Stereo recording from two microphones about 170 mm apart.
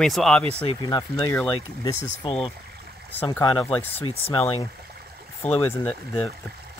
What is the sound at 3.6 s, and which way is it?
Speech, 10° left (ahead or behind).